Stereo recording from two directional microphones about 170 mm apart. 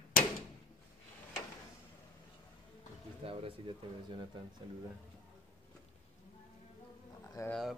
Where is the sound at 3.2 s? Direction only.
30° right (ahead or behind).